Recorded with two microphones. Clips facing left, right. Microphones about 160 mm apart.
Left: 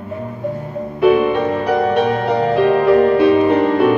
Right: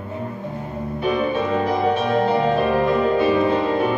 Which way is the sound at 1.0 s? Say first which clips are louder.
Left 8 dB; 70° left (ahead or behind).